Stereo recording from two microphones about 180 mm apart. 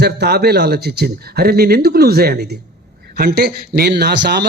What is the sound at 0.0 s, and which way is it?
A man's voice, 65° right (ahead or behind).